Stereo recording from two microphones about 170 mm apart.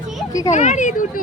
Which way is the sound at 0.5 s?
45° left (ahead or behind).